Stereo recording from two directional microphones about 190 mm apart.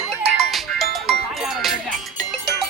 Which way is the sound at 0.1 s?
Centre (ahead or behind).